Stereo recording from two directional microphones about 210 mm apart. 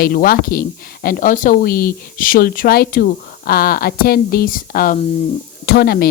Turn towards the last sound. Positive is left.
turn(degrees=50)  # may be behind; listen again after turning